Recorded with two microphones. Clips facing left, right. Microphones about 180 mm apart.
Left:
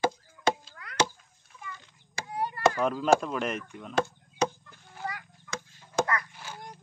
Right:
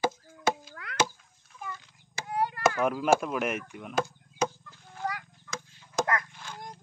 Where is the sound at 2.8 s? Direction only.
5° right (ahead or behind).